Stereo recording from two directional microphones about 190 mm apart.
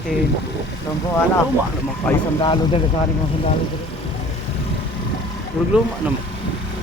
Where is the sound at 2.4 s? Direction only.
25° left (ahead or behind).